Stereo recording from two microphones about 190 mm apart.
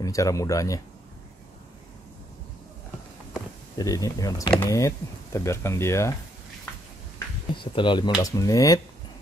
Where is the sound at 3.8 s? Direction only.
20° left (ahead or behind).